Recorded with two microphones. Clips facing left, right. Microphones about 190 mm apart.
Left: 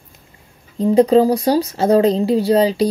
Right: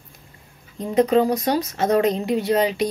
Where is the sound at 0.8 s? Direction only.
30° left (ahead or behind).